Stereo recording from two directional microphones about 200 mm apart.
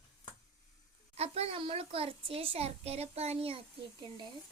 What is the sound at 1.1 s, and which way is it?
A child's voice, 30° right (ahead or behind).